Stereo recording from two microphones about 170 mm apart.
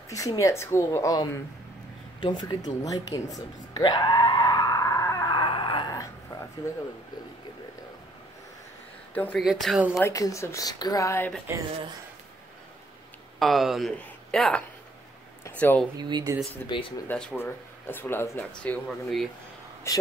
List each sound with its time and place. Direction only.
0.1 s a woman's voice: 20° left (ahead or behind)
2.1 s a sound: 25° left (ahead or behind)
9.1 s speech: 10° left (ahead or behind)
9.4 s speech: centre (ahead or behind)
9.9 s a woman's voice: 20° left (ahead or behind)
13.4 s speech: centre (ahead or behind)
16.0 s speech: 25° right (ahead or behind)
16.6 s a woman's voice: 10° left (ahead or behind)